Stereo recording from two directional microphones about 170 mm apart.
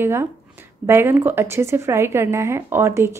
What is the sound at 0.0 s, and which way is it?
A woman's voice, 15° right (ahead or behind).